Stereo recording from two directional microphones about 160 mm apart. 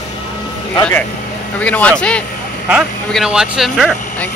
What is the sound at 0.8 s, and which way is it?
Speech, 10° left (ahead or behind).